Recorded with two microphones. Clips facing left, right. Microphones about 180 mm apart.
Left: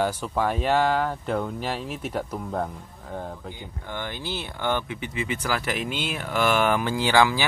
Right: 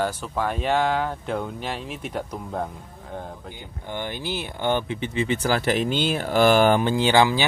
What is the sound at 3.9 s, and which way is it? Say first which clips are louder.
Speech: right 3 dB; 20° right (ahead or behind).